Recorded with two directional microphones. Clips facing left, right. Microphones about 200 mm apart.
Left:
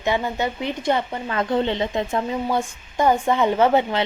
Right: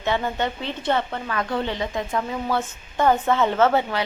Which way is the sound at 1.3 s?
25° left (ahead or behind).